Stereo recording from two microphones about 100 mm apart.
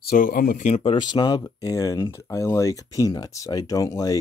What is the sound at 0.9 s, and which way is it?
Speech, 45° left (ahead or behind).